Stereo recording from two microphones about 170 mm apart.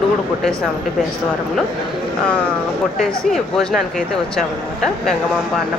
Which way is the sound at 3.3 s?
Centre (ahead or behind).